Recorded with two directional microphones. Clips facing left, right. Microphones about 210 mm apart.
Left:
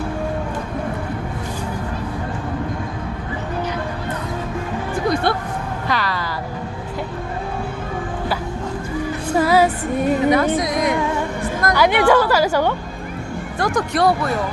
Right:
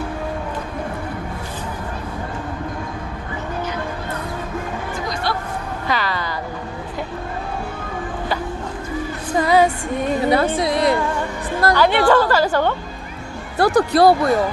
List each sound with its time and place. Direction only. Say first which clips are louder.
5.9 s music: right 1 dB; centre (ahead or behind)
9.3 s music: even; 5° left (ahead or behind)
10.2 s speech: left 1 dB; 30° right (ahead or behind)
11.7 s a woman's voice: even; 10° left (ahead or behind)
13.6 s speech: right 5 dB; 35° right (ahead or behind)